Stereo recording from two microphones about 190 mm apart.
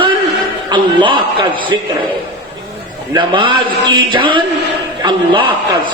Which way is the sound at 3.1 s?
25° right (ahead or behind).